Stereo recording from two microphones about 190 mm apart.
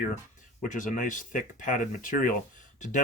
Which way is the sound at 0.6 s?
45° left (ahead or behind).